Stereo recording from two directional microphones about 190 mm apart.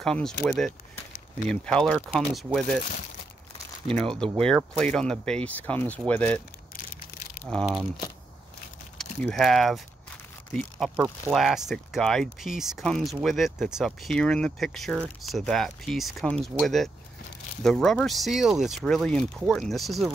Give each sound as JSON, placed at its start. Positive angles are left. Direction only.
{"t": 0.0, "sound": "speech", "side_deg": 5}
{"t": 3.8, "sound": "speech", "side_deg": 5}
{"t": 8.9, "sound": "speech", "side_deg": 0}
{"t": 11.3, "sound": "speech", "side_deg": 0}